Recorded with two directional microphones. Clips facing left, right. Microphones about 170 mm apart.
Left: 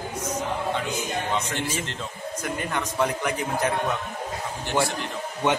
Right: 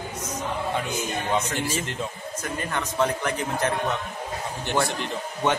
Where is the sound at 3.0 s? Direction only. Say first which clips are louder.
Right 1 dB; 10° left (ahead or behind).